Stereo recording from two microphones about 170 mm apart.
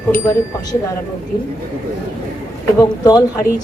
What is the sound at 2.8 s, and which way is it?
Speech, 20° left (ahead or behind).